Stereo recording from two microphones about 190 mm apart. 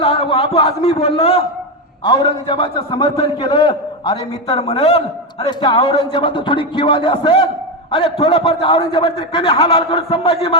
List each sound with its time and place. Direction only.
0.0 s a man's voice: 30° left (ahead or behind)